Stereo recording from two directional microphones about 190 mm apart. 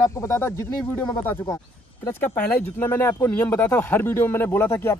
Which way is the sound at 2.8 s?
10° left (ahead or behind).